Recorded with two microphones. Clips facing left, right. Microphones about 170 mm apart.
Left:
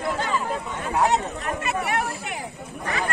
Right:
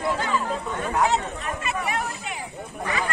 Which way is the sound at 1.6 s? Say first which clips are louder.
Left 2 dB; 60° left (ahead or behind).